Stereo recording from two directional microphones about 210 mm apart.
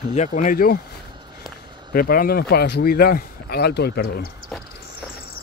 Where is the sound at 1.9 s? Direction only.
45° left (ahead or behind).